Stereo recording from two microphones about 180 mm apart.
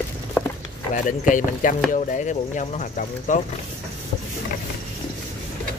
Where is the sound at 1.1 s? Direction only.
45° left (ahead or behind).